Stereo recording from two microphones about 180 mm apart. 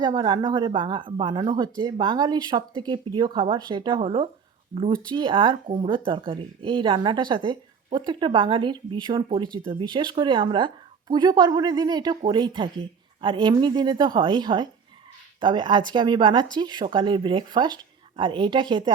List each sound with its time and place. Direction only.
0.0 s speech: 25° right (ahead or behind)